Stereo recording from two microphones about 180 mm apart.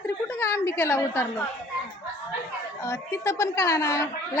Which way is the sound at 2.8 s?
15° left (ahead or behind).